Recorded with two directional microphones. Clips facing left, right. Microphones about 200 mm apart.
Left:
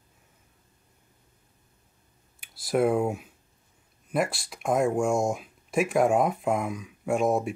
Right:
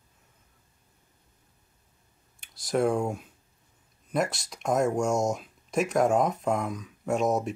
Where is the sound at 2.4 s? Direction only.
5° left (ahead or behind).